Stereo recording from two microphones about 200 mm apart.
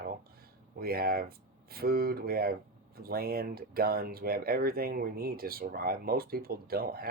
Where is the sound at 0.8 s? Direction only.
50° right (ahead or behind).